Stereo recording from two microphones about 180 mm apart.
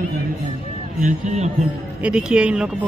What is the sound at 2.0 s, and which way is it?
Speech, 5° right (ahead or behind).